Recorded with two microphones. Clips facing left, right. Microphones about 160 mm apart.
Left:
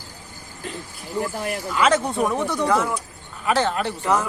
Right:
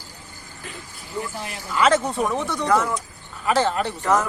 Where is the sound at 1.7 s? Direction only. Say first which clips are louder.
Right 1 dB; centre (ahead or behind).